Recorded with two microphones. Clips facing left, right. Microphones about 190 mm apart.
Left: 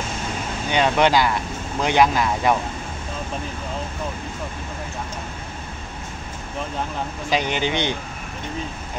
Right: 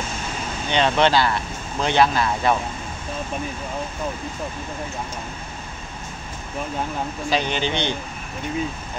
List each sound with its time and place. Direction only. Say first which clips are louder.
0.7 s speech: even; 10° left (ahead or behind)
7.2 s speech: left 1 dB; 15° left (ahead or behind)